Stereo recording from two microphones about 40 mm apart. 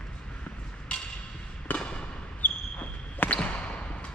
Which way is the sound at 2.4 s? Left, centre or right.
Left.